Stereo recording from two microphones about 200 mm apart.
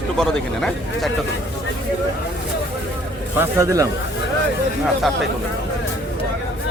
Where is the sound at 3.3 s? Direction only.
15° right (ahead or behind).